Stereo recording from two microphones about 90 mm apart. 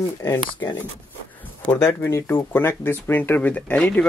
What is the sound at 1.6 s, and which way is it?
Speech, 25° left (ahead or behind).